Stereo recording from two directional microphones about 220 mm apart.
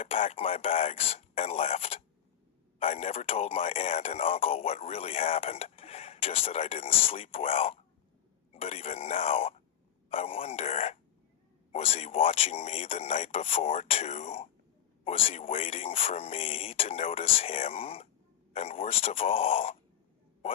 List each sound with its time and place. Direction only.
0.0 s speech: 25° left (ahead or behind)